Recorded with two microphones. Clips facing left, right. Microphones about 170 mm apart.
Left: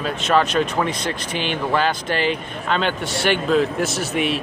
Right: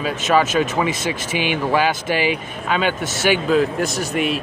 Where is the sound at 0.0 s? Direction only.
5° right (ahead or behind).